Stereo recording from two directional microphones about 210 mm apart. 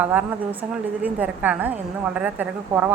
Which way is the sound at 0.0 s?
10° right (ahead or behind).